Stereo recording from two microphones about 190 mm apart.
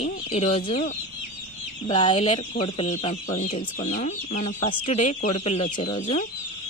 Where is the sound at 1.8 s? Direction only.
25° left (ahead or behind).